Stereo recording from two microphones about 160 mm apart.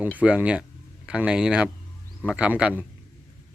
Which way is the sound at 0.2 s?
10° right (ahead or behind).